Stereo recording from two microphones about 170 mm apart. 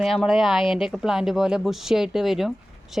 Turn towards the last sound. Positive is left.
turn(degrees=0)  # may be behind; listen again after turning